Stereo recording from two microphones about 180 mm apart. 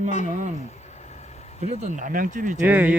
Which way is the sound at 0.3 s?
45° right (ahead or behind).